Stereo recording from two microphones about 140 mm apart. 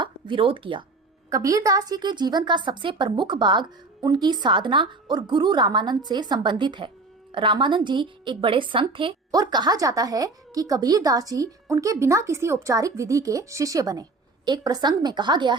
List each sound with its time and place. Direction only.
0.0 s speech: 35° right (ahead or behind)
1.3 s a woman's voice: 25° right (ahead or behind)